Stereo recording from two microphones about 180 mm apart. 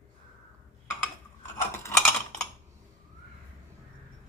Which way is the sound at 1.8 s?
15° left (ahead or behind).